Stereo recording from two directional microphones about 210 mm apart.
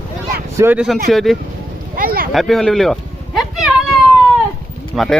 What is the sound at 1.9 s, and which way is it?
Speech, 45° right (ahead or behind).